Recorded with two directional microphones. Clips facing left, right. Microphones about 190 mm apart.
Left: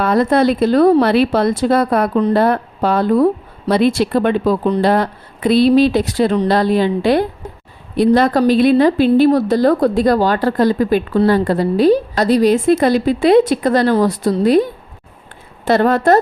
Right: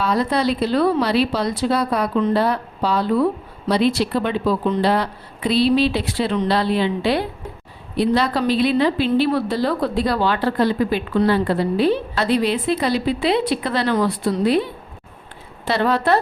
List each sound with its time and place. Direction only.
0.0 s speech: 50° left (ahead or behind)
2.1 s speech: 35° left (ahead or behind)
2.4 s speech: 55° left (ahead or behind)